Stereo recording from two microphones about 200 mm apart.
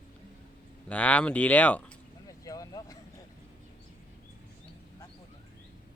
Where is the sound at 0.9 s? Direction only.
5° left (ahead or behind).